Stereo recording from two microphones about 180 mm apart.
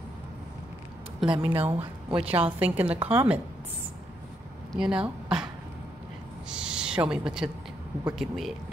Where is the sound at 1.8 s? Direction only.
30° right (ahead or behind).